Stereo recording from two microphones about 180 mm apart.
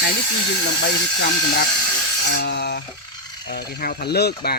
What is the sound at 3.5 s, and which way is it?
Speech, 65° left (ahead or behind).